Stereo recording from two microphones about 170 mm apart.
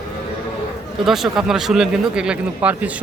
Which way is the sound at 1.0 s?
Centre (ahead or behind).